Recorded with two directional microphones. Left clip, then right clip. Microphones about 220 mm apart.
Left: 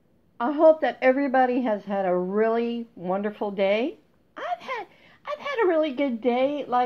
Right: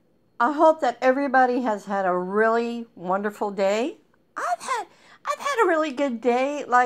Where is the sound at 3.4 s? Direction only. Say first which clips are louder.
Right 2 dB; 20° right (ahead or behind).